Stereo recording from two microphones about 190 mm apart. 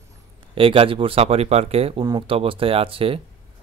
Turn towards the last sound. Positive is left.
turn(degrees=-30)  # may be behind; listen again after turning